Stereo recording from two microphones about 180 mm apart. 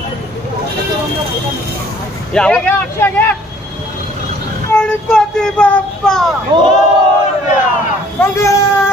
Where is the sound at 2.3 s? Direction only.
5° left (ahead or behind).